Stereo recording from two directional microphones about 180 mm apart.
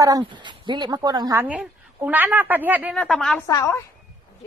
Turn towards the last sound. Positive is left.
turn(degrees=15)  # may be behind; listen again after turning